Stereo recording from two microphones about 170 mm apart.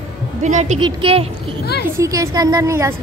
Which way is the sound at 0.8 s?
30° right (ahead or behind).